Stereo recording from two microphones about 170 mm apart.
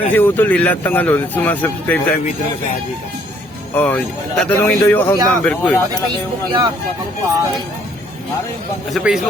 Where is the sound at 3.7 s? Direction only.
10° left (ahead or behind).